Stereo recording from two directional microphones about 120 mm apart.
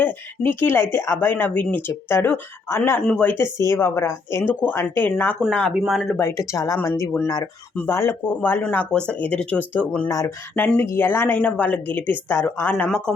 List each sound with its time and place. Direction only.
0.0 s speech: 15° left (ahead or behind)
3.0 s speech: 10° left (ahead or behind)
6.1 s speech: 20° left (ahead or behind)
10.1 s speech: 30° left (ahead or behind)
10.5 s speech: 15° left (ahead or behind)